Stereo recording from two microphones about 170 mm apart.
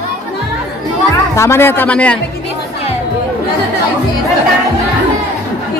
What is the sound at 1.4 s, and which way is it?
Speech, 15° left (ahead or behind).